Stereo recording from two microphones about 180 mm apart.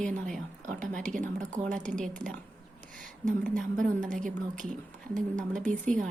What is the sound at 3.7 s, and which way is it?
A woman's voice, 45° right (ahead or behind).